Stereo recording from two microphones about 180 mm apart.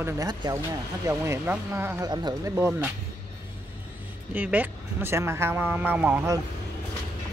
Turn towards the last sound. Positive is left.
turn(degrees=-15)  # may be behind; listen again after turning